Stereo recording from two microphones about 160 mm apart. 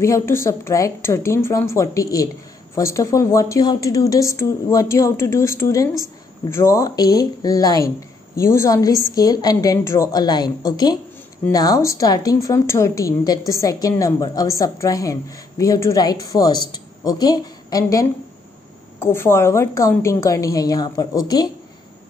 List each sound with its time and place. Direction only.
0.0 s a woman's voice: 15° left (ahead or behind)